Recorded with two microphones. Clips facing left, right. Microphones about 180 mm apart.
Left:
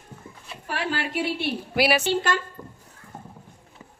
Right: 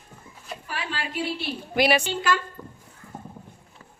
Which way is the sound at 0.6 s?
70° left (ahead or behind).